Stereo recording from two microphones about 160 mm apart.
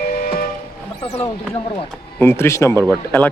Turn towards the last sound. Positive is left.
turn(degrees=10)  # may be behind; listen again after turning